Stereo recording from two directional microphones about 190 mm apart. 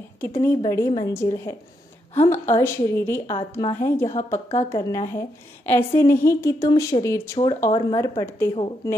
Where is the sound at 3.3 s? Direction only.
25° left (ahead or behind).